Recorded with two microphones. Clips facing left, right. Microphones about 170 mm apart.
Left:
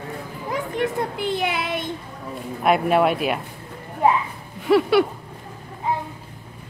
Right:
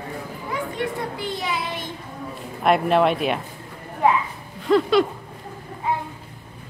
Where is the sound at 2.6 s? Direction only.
5° left (ahead or behind).